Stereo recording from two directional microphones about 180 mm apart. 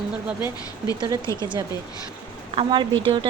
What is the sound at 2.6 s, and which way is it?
Speech, 25° right (ahead or behind).